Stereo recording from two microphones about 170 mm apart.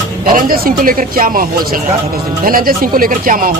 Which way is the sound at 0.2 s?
55° right (ahead or behind).